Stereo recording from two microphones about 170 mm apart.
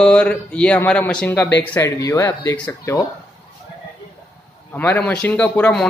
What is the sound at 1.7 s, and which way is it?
Speech, 15° left (ahead or behind).